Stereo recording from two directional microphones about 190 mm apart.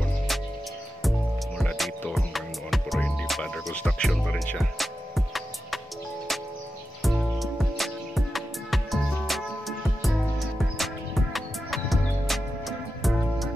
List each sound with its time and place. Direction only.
1.6 s music: 5° left (ahead or behind)
7.0 s music: centre (ahead or behind)